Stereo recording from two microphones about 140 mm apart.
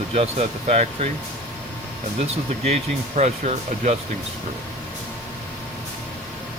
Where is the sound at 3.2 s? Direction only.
55° right (ahead or behind).